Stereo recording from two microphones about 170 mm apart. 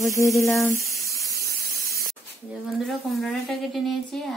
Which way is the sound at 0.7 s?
15° left (ahead or behind).